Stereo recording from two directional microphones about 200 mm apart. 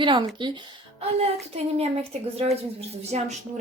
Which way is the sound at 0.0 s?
25° right (ahead or behind).